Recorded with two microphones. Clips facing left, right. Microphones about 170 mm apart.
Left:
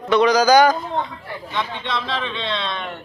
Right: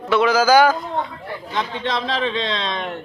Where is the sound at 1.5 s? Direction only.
40° right (ahead or behind).